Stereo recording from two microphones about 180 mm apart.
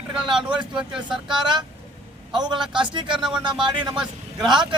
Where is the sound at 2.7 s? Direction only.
25° right (ahead or behind).